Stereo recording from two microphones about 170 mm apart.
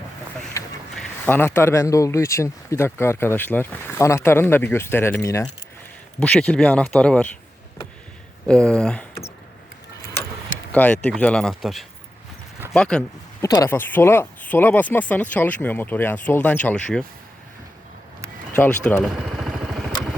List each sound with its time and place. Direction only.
0.6 s duck: 15° left (ahead or behind)
0.9 s speech: 10° left (ahead or behind)
8.4 s speech: 5° left (ahead or behind)
10.7 s speech: 10° left (ahead or behind)
13.4 s speech: 20° left (ahead or behind)
18.5 s vehicle: 10° left (ahead or behind)